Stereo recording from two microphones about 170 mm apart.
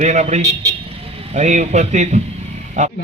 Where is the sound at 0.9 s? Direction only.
35° right (ahead or behind).